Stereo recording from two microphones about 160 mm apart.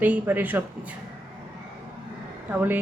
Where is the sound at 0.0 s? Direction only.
10° right (ahead or behind).